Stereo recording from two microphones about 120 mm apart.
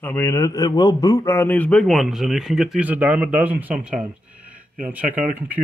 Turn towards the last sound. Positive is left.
turn(degrees=-15)  # may be behind; listen again after turning